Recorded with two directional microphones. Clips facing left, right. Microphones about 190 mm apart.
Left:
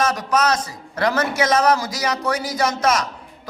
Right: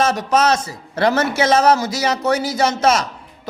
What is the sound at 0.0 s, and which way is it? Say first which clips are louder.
A man's voice: right 3 dB; 25° right (ahead or behind).